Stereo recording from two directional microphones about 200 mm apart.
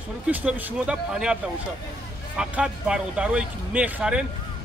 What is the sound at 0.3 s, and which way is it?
Speech, 10° right (ahead or behind).